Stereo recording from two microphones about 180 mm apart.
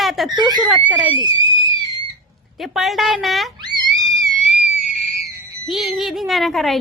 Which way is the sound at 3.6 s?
20° right (ahead or behind).